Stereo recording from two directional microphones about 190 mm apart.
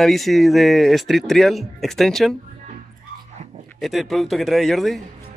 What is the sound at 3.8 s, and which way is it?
A man's voice, centre (ahead or behind).